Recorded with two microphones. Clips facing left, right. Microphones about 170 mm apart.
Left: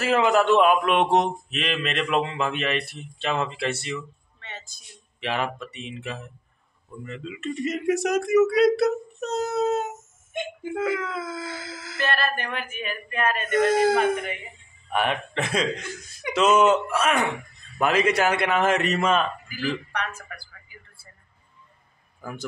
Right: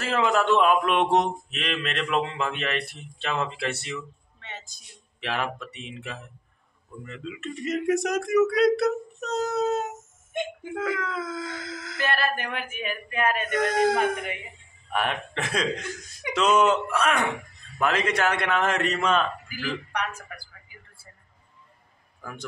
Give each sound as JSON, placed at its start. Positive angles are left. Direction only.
{"t": 0.0, "sound": "a man's voice", "side_deg": 5}
{"t": 4.4, "sound": "a sound", "side_deg": -15}
{"t": 5.2, "sound": "a man's voice", "side_deg": 0}
{"t": 12.0, "sound": "speech", "side_deg": -10}
{"t": 13.5, "sound": "a man's voice", "side_deg": 5}
{"t": 19.5, "sound": "speech", "side_deg": -15}
{"t": 22.2, "sound": "a man's voice", "side_deg": 5}